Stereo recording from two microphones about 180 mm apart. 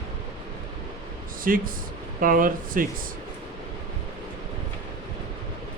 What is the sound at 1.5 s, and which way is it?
Speech, 50° right (ahead or behind).